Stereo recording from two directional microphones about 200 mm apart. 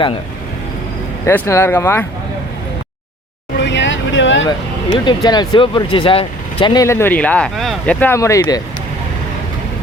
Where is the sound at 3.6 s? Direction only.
65° left (ahead or behind).